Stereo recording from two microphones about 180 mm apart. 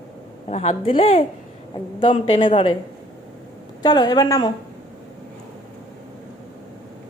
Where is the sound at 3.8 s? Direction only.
25° left (ahead or behind).